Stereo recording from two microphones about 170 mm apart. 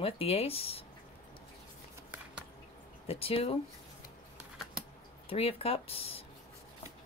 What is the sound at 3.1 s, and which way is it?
Speech, 35° left (ahead or behind).